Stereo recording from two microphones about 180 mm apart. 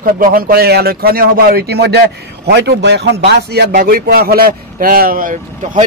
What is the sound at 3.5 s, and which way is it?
Speech, 55° right (ahead or behind).